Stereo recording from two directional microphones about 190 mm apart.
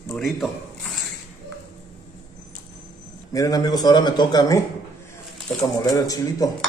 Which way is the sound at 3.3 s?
20° left (ahead or behind).